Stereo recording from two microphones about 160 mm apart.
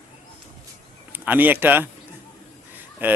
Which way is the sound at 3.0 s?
10° right (ahead or behind).